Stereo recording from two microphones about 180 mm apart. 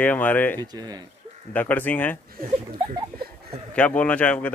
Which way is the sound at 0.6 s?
20° right (ahead or behind).